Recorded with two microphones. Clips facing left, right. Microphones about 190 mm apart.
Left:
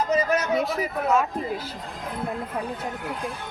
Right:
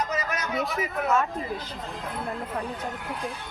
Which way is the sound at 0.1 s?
30° left (ahead or behind).